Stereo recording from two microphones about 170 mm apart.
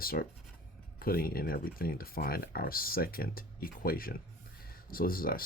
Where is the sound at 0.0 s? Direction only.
60° left (ahead or behind).